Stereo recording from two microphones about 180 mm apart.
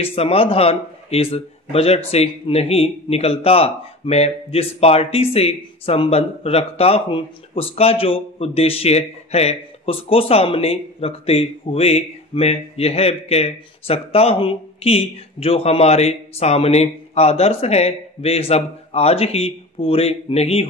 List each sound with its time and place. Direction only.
0.0 s speech: 30° left (ahead or behind)